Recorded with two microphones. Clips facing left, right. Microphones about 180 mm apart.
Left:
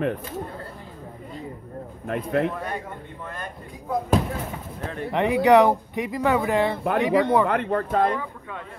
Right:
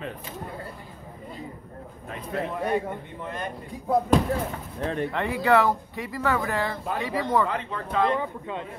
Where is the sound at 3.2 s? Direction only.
20° right (ahead or behind).